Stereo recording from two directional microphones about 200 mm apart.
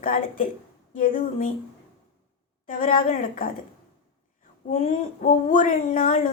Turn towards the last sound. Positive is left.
turn(degrees=45)  # may be behind; listen again after turning